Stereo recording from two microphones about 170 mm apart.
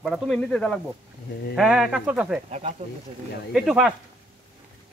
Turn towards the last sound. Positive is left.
turn(degrees=0)  # may be behind; listen again after turning